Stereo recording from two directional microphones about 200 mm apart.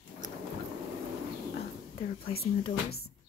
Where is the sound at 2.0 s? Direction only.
30° left (ahead or behind).